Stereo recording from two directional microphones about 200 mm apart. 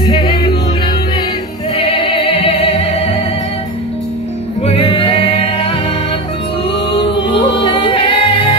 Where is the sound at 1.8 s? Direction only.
30° left (ahead or behind).